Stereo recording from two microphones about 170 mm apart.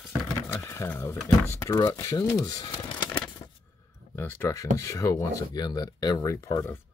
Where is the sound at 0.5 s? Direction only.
15° left (ahead or behind).